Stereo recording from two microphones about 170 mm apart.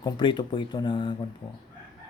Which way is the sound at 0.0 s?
25° left (ahead or behind).